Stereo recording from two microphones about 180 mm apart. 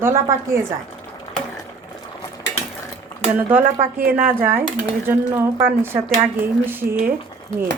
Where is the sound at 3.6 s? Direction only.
50° right (ahead or behind).